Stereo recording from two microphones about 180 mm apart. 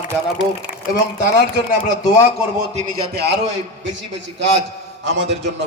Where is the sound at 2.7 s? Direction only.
40° right (ahead or behind).